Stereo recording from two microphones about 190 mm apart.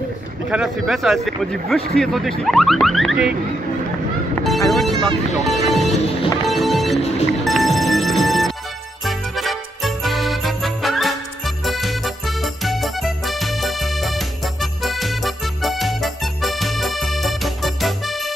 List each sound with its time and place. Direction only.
0.5 s a man's voice: centre (ahead or behind)
4.4 s speech: centre (ahead or behind)
5.9 s music: 30° left (ahead or behind)
6.4 s music: centre (ahead or behind)
7.0 s music: 35° left (ahead or behind)
7.4 s music: centre (ahead or behind)